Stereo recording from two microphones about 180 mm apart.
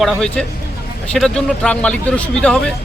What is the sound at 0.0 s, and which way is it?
Speech, 5° left (ahead or behind).